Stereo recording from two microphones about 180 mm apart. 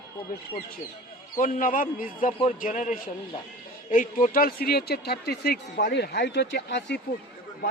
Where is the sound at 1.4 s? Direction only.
45° left (ahead or behind); by 7.0 s 75° left (ahead or behind).